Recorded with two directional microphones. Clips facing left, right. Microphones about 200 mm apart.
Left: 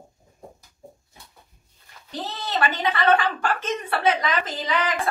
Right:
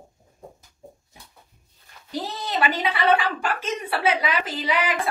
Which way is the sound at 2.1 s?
10° right (ahead or behind).